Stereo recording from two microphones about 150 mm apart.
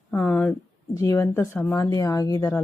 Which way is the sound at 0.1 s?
10° left (ahead or behind).